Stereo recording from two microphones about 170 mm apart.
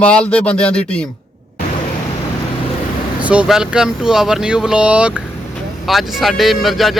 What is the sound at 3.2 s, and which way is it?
Speech, 5° right (ahead or behind).